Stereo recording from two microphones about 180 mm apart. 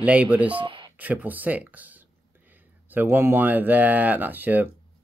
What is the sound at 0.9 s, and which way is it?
Speech, 10° right (ahead or behind).